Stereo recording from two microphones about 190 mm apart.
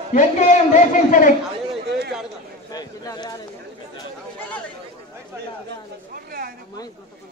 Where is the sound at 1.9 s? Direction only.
60° right (ahead or behind).